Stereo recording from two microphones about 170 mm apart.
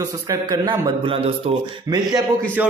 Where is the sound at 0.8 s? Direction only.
35° right (ahead or behind).